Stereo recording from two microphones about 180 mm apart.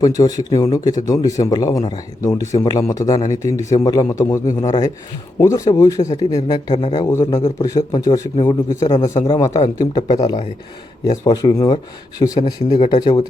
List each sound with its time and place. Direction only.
0.0 s a man's voice: 20° left (ahead or behind)